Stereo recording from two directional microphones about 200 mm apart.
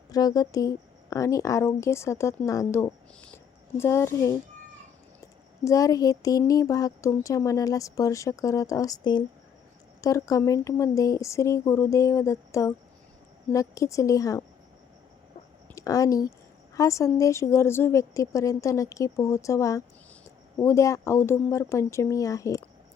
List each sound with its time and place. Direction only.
0.1 s speech: 20° left (ahead or behind)
5.6 s speech: 15° left (ahead or behind)
15.7 s speech: 15° left (ahead or behind)